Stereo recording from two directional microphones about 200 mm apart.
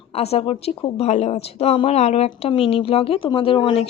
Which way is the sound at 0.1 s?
30° left (ahead or behind).